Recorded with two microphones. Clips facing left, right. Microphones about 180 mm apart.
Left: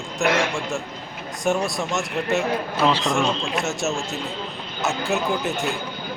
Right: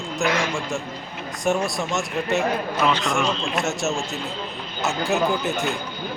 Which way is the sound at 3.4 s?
Centre (ahead or behind).